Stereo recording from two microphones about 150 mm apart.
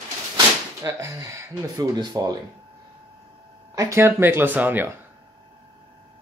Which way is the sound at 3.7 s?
20° right (ahead or behind).